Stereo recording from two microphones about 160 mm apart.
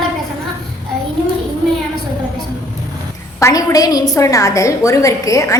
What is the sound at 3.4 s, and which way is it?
A woman's voice, 25° left (ahead or behind).